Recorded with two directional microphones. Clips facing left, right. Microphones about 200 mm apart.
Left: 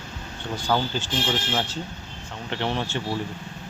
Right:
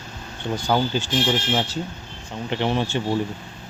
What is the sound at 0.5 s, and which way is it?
Speech, 15° right (ahead or behind).